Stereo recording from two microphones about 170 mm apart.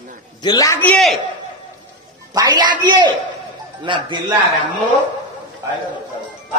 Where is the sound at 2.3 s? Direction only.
25° right (ahead or behind).